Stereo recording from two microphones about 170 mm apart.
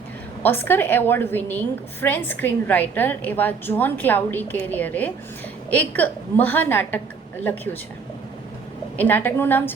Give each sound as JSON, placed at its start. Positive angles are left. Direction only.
{"t": 0.4, "sound": "a woman's voice", "side_deg": 10}
{"t": 9.0, "sound": "a woman's voice", "side_deg": 10}